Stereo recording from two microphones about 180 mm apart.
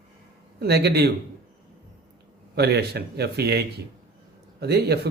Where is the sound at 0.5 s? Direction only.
65° right (ahead or behind).